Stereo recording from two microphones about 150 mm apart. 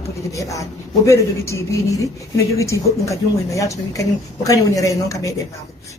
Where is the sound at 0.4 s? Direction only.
20° left (ahead or behind).